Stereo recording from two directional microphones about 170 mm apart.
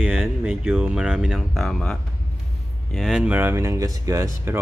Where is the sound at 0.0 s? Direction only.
5° right (ahead or behind).